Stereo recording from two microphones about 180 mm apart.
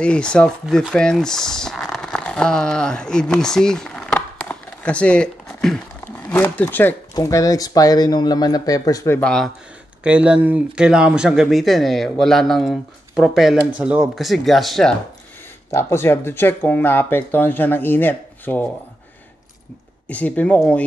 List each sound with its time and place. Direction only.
0.0 s speech: 5° left (ahead or behind)
10.0 s speech: 5° right (ahead or behind)
15.7 s speech: 15° left (ahead or behind)
20.1 s speech: 10° left (ahead or behind)